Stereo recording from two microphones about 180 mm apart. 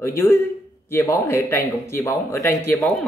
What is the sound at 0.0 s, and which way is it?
Speech, 15° left (ahead or behind).